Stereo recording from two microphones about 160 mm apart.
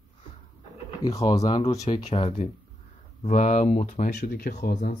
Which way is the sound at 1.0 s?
20° left (ahead or behind).